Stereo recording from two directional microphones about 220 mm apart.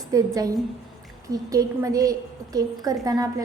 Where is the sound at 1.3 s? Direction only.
15° right (ahead or behind).